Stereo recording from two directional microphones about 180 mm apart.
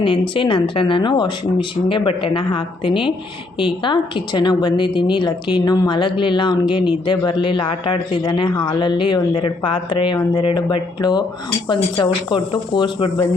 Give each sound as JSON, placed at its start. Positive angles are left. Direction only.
{"t": 0.0, "sound": "a woman's voice", "side_deg": 30}